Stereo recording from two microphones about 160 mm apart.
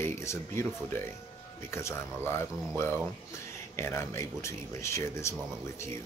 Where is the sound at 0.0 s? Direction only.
15° left (ahead or behind).